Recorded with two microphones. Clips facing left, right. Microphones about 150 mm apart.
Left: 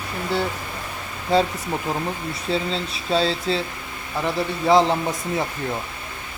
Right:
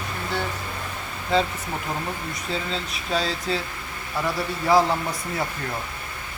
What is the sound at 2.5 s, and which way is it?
Speech, 30° left (ahead or behind).